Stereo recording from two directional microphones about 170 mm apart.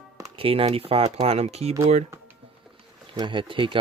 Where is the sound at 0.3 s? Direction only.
35° right (ahead or behind).